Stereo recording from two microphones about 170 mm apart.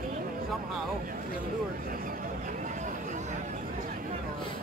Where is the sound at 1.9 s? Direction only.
50° right (ahead or behind).